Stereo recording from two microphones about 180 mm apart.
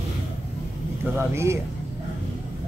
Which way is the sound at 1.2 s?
15° right (ahead or behind).